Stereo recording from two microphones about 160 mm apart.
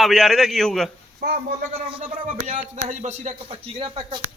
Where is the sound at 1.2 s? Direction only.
65° right (ahead or behind).